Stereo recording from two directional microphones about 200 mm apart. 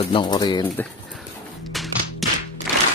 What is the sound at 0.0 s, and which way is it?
Speech, 25° left (ahead or behind).